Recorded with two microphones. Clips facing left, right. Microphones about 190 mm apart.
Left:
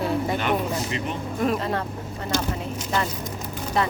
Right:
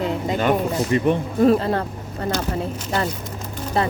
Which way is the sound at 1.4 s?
35° right (ahead or behind).